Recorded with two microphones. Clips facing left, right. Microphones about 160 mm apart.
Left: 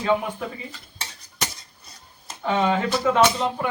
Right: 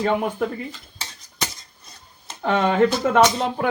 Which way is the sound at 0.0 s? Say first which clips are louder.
Right 2 dB; 55° right (ahead or behind).